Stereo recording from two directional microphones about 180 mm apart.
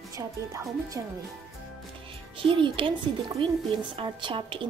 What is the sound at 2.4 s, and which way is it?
A woman's voice, 30° right (ahead or behind).